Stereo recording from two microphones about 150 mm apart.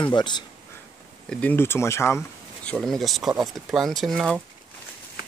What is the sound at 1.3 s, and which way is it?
Speech, 10° left (ahead or behind).